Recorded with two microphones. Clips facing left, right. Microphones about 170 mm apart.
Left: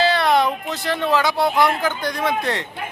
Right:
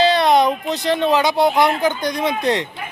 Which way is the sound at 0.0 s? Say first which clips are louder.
Right 3 dB; 20° right (ahead or behind).